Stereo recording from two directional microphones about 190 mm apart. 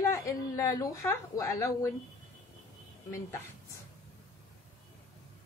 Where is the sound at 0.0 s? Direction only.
15° left (ahead or behind).